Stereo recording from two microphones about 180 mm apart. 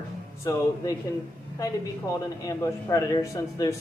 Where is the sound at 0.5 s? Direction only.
20° left (ahead or behind).